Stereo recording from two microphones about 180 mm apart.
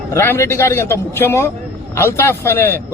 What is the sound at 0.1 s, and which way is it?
A man's voice, 15° left (ahead or behind).